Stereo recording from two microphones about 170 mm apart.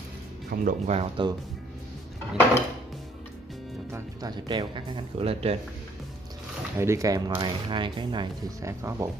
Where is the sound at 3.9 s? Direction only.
25° right (ahead or behind).